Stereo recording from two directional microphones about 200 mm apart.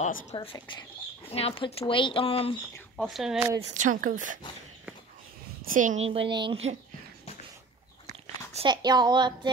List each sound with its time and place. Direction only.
0.0 s speech: 35° left (ahead or behind)
3.0 s speech: centre (ahead or behind)
3.7 s speech: 40° right (ahead or behind)
5.7 s a woman's voice: 40° right (ahead or behind)
8.1 s speech: 25° right (ahead or behind)